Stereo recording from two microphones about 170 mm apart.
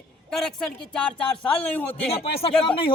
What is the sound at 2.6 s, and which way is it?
Speech, 30° left (ahead or behind).